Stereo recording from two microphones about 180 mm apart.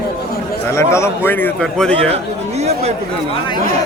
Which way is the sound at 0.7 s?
15° left (ahead or behind).